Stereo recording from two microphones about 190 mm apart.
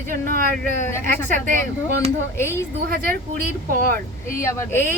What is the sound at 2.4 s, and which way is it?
Speech, 15° left (ahead or behind).